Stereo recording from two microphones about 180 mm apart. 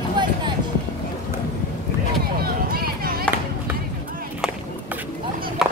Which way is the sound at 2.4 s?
55° right (ahead or behind).